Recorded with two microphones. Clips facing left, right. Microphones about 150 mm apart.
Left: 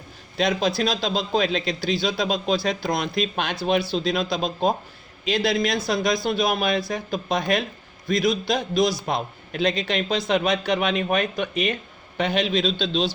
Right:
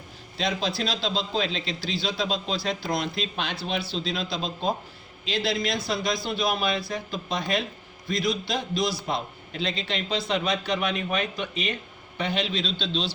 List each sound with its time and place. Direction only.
0.3 s a man's voice: 50° left (ahead or behind)